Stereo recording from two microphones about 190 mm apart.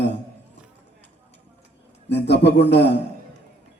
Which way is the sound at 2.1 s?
65° left (ahead or behind).